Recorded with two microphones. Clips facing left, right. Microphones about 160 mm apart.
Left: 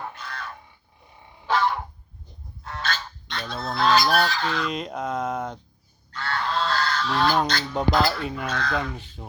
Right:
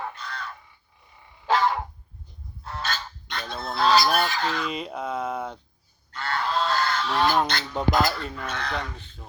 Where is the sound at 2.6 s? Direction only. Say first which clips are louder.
Left 1 dB; 5° right (ahead or behind).